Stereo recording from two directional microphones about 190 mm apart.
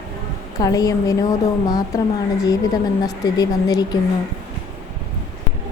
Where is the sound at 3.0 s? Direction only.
20° left (ahead or behind).